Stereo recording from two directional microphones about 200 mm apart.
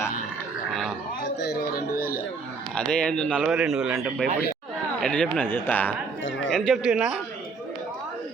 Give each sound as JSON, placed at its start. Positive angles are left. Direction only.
{"t": 0.7, "sound": "gargling", "side_deg": 0}
{"t": 2.0, "sound": "a sound", "side_deg": 50}
{"t": 2.7, "sound": "speech", "side_deg": 5}